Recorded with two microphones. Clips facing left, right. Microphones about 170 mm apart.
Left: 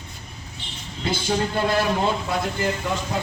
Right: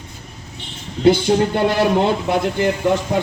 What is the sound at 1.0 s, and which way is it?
A man's voice, 65° right (ahead or behind).